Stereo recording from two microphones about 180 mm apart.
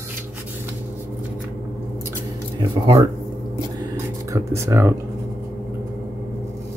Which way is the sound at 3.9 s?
15° right (ahead or behind).